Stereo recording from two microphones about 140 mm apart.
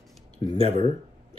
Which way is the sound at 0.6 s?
45° right (ahead or behind).